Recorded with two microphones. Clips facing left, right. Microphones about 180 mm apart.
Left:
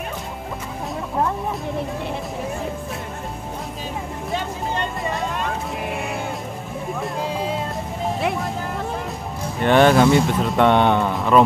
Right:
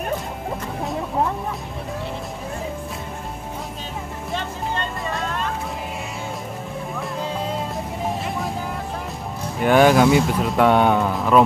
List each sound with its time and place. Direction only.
4.7 s vehicle: 15° left (ahead or behind)
9.6 s speech: 5° right (ahead or behind)